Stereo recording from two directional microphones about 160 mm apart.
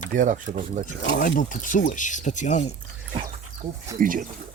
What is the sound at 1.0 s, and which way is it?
Speech, 65° left (ahead or behind).